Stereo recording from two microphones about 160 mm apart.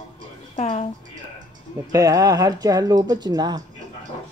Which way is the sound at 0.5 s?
40° left (ahead or behind).